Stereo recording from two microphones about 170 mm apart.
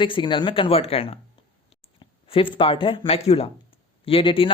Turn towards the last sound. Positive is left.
turn(degrees=30)  # may be behind; listen again after turning